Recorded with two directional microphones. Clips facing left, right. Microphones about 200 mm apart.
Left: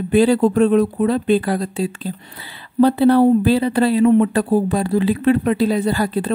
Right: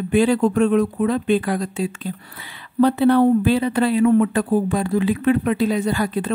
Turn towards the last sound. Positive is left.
turn(degrees=35)  # may be behind; listen again after turning